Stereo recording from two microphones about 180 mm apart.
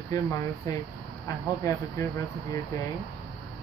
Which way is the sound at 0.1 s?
20° left (ahead or behind).